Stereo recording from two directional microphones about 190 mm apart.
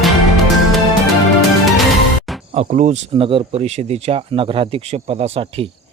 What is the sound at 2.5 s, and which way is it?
Speech, 40° right (ahead or behind).